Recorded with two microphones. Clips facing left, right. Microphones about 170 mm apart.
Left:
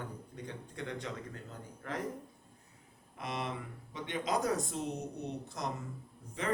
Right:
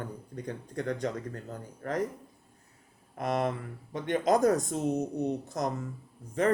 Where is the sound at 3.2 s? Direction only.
50° right (ahead or behind).